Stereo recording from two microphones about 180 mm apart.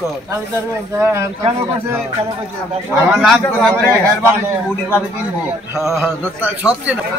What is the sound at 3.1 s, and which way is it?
Speech, centre (ahead or behind).